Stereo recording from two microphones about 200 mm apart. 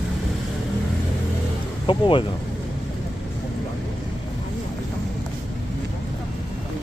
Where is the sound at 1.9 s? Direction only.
25° left (ahead or behind).